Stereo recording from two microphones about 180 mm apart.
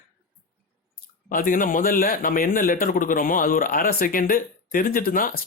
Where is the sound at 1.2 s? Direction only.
50° left (ahead or behind).